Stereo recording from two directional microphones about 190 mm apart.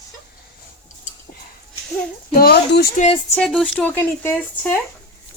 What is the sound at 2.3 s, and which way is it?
Speech, 55° left (ahead or behind).